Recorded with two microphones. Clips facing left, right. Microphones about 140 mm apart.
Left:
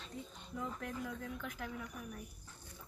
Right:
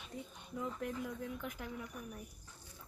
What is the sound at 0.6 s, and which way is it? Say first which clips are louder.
A woman's voice: right 2 dB; 5° right (ahead or behind).